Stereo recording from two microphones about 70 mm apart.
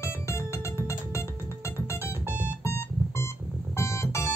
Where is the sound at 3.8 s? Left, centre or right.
Left.